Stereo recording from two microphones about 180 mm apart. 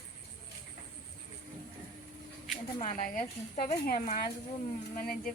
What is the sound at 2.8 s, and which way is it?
A woman's voice, 45° left (ahead or behind).